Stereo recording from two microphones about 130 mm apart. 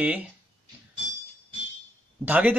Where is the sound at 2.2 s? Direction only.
15° right (ahead or behind).